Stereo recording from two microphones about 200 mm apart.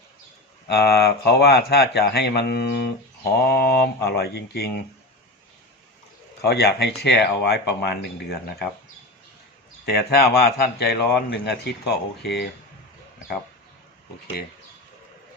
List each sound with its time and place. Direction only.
0.7 s speech: 55° left (ahead or behind)
6.4 s speech: 55° left (ahead or behind)
9.8 s speech: 50° left (ahead or behind)